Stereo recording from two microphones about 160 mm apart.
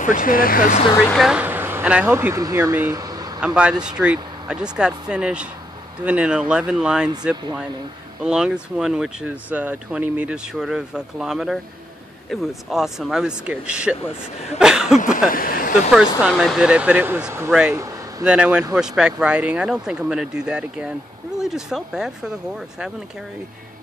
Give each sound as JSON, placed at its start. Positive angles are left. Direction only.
{"t": 0.0, "sound": "speech", "side_deg": 55}
{"t": 1.1, "sound": "speech", "side_deg": -5}
{"t": 3.3, "sound": "speech", "side_deg": -5}
{"t": 8.2, "sound": "speech", "side_deg": -5}
{"t": 15.1, "sound": "speech", "side_deg": 60}
{"t": 15.9, "sound": "speech", "side_deg": -5}
{"t": 17.7, "sound": "a sound", "side_deg": -20}
{"t": 18.2, "sound": "speech", "side_deg": -5}